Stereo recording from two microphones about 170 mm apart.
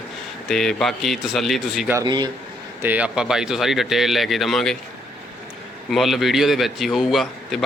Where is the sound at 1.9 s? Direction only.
20° right (ahead or behind).